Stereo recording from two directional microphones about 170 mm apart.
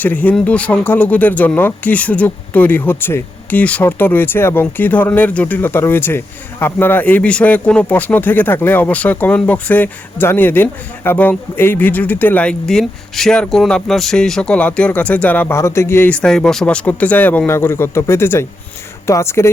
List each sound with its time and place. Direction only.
0.0 s speech: 10° left (ahead or behind)